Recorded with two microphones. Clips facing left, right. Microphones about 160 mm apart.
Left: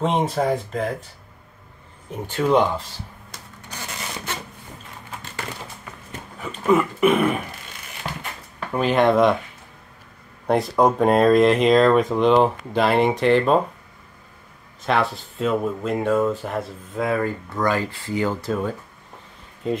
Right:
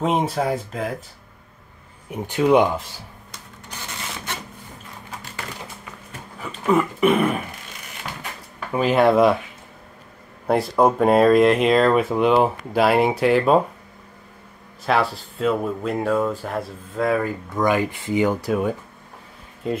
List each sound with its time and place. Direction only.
0.3 s speech: centre (ahead or behind)
2.0 s speech: 15° right (ahead or behind)
6.4 s speech: centre (ahead or behind)
8.7 s speech: 5° right (ahead or behind)
10.4 s speech: centre (ahead or behind)
14.9 s speech: centre (ahead or behind)
17.6 s speech: 15° right (ahead or behind)
19.6 s speech: centre (ahead or behind)